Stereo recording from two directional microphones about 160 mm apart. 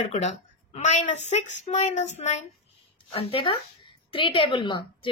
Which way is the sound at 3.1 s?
35° left (ahead or behind).